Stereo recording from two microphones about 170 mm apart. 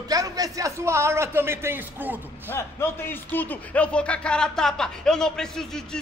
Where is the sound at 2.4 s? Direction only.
10° left (ahead or behind).